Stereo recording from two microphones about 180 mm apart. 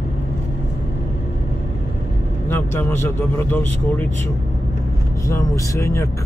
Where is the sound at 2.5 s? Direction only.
10° left (ahead or behind).